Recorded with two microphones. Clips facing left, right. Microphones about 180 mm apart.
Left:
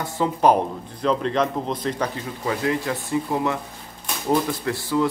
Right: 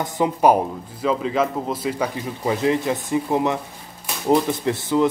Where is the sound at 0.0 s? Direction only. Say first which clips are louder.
Right 2 dB; 15° right (ahead or behind).